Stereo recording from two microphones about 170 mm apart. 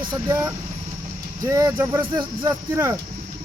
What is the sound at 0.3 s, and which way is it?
Speech, 15° right (ahead or behind).